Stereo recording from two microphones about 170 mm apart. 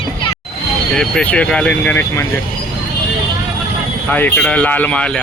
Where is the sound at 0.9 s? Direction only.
5° left (ahead or behind).